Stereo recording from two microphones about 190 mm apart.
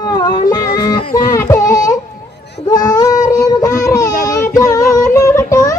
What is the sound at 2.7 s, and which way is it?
Child singing, 20° left (ahead or behind).